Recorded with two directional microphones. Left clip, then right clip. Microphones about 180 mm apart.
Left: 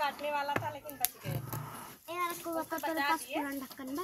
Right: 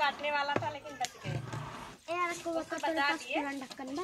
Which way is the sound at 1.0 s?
30° left (ahead or behind).